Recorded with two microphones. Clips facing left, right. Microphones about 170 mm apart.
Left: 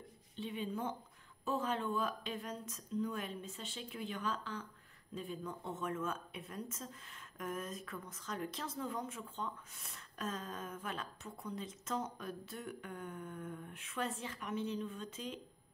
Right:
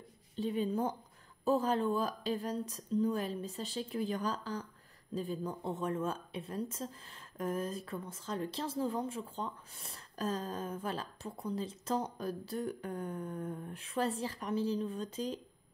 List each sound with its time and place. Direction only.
0.4 s a woman's voice: 40° right (ahead or behind)